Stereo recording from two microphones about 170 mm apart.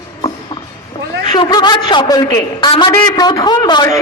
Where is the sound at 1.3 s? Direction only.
25° left (ahead or behind).